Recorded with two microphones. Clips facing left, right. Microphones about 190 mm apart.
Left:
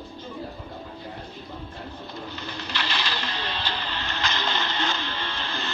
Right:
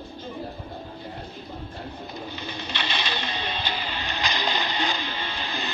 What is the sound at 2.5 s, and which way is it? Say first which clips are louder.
Music: even; 20° right (ahead or behind).